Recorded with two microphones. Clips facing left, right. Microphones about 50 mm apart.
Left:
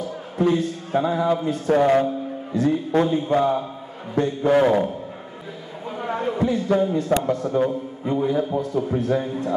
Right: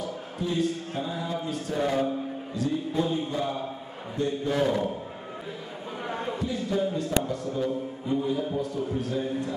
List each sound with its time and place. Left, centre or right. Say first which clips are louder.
0.4 s a man's voice: left 7 dB; left
6.4 s speech: left 8 dB; left